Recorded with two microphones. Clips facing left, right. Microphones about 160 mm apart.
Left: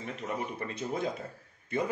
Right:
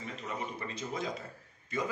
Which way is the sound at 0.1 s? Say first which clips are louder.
Left 4 dB; 55° left (ahead or behind).